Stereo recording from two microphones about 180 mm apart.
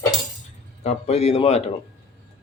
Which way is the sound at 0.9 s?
35° left (ahead or behind).